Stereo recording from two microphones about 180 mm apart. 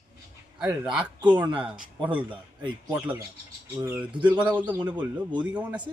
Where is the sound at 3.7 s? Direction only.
10° right (ahead or behind).